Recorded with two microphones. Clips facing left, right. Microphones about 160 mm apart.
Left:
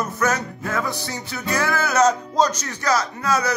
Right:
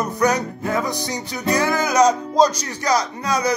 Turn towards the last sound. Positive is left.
turn(degrees=-15)  # may be behind; listen again after turning